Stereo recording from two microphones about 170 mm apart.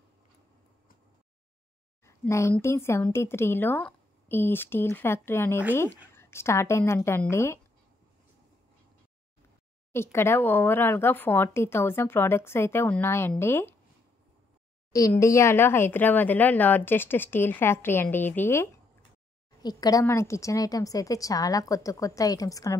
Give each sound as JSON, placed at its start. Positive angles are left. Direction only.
{"t": 2.0, "sound": "a woman's voice", "side_deg": 15}
{"t": 9.9, "sound": "speech", "side_deg": 15}
{"t": 14.9, "sound": "a woman's voice", "side_deg": 20}